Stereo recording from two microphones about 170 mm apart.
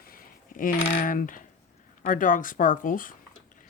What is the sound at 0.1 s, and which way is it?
Coin, 55° left (ahead or behind).